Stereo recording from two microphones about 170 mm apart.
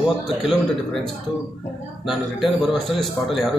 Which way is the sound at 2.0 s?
Centre (ahead or behind).